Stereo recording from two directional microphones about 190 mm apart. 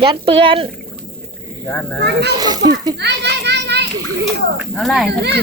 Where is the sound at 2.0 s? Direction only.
60° right (ahead or behind).